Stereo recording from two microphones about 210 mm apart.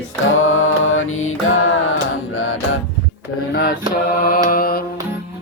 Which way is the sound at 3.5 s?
45° left (ahead or behind).